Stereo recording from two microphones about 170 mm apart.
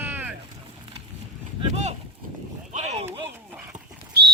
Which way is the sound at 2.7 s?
40° right (ahead or behind).